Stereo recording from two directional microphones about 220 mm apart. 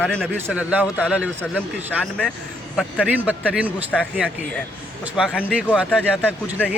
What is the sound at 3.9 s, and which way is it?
Speech, 5° left (ahead or behind).